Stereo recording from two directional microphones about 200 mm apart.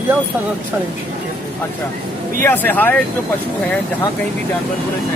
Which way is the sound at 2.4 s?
10° left (ahead or behind).